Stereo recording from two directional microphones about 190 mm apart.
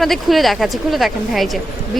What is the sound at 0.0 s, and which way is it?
Speech, centre (ahead or behind).